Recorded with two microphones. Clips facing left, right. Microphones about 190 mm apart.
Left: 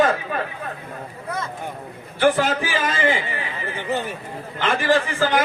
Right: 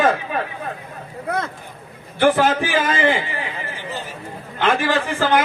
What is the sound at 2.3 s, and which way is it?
Speech, 55° right (ahead or behind).